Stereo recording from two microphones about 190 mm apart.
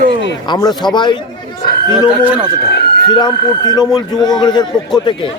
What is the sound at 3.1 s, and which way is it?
A man's voice, 25° left (ahead or behind).